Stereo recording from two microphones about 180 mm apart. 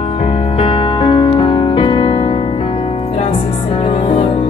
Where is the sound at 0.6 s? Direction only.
30° left (ahead or behind).